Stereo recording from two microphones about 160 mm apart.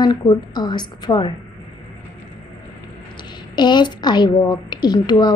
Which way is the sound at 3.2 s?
30° left (ahead or behind).